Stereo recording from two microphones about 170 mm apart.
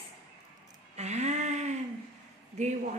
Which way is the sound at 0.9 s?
40° right (ahead or behind).